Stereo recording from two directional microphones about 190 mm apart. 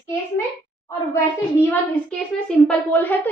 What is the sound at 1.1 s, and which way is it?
A woman's voice, 10° left (ahead or behind).